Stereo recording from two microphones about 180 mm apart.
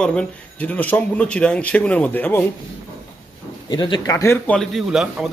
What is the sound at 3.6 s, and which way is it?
Speech, 25° left (ahead or behind).